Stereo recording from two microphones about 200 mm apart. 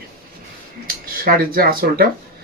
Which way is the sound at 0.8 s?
45° right (ahead or behind).